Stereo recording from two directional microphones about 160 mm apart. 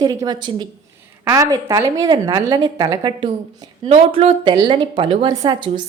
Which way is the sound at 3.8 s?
40° right (ahead or behind).